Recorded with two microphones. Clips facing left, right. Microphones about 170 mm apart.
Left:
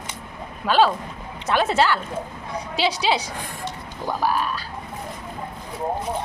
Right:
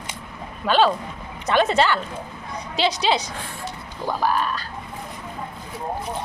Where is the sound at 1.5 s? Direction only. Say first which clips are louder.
Right 1 dB; 5° left (ahead or behind).